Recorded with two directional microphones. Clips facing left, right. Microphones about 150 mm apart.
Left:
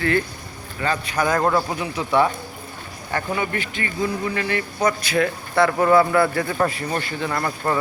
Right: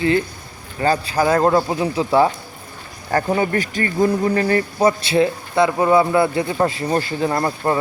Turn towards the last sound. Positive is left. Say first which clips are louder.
# right 4 dB
turn(degrees=-30)  # may be behind; listen again after turning